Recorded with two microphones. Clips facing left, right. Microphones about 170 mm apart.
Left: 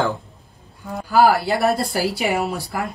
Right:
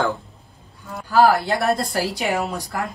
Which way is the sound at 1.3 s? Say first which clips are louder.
Left 1 dB; 5° left (ahead or behind).